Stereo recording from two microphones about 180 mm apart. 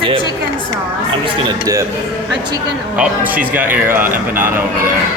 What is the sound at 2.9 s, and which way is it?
Speech, 10° right (ahead or behind).